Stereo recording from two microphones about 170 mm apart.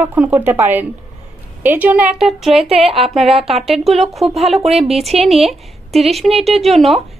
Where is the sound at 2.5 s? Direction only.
35° right (ahead or behind).